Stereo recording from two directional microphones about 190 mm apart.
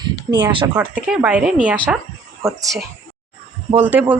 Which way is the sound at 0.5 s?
25° right (ahead or behind).